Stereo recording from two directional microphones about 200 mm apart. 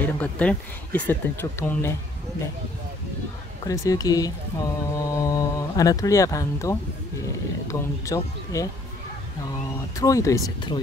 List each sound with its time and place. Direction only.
0.0 s speech: 5° left (ahead or behind)
3.6 s speech: 15° left (ahead or behind)
9.9 s speech: 15° left (ahead or behind)